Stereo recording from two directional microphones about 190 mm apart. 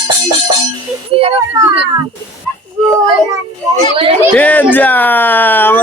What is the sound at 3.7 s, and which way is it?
Speech, 35° right (ahead or behind).